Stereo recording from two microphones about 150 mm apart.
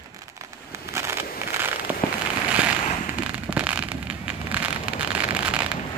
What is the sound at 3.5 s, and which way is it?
Vehicle, 10° right (ahead or behind).